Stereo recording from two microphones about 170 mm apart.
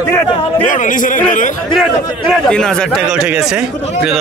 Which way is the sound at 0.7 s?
50° left (ahead or behind).